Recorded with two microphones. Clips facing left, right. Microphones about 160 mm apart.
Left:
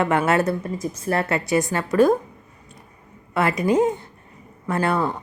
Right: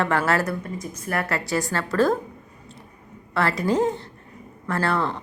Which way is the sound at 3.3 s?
20° left (ahead or behind).